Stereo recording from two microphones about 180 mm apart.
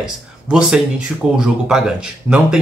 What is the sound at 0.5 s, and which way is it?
Speech, 5° right (ahead or behind).